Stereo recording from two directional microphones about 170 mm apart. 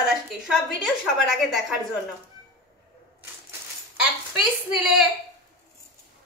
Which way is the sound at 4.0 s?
5° right (ahead or behind).